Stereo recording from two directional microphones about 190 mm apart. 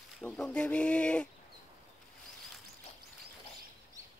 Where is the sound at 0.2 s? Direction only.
5° left (ahead or behind).